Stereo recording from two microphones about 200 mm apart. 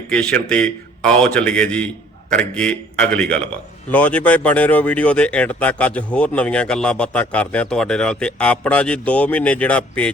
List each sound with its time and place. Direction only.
0.1 s a man's voice: 5° left (ahead or behind)